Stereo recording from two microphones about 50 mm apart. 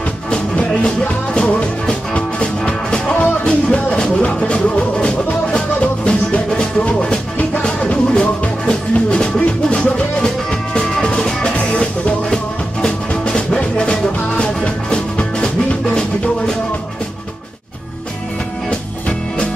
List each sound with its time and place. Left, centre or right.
0.3 s music: left
18.7 s music: left